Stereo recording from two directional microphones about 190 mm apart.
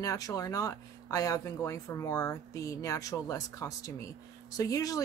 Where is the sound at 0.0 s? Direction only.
20° left (ahead or behind).